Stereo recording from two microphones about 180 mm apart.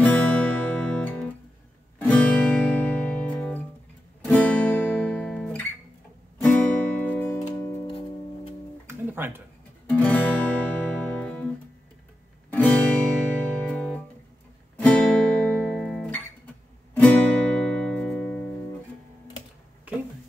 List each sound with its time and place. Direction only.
0.0 s music: 5° left (ahead or behind)
4.2 s guitar: 5° left (ahead or behind)
6.4 s music: 10° left (ahead or behind)
8.8 s guitar: 10° right (ahead or behind)
9.8 s guitar: 10° left (ahead or behind)
12.4 s music: 10° left (ahead or behind)